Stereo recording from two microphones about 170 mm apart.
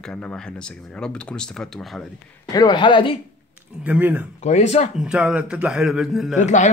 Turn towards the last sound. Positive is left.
turn(degrees=45)  # may be behind; listen again after turning